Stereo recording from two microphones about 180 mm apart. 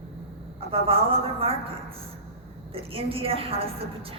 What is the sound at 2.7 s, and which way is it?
A woman's voice, 30° right (ahead or behind).